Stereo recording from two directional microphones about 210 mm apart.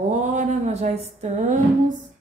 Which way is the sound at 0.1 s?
35° right (ahead or behind).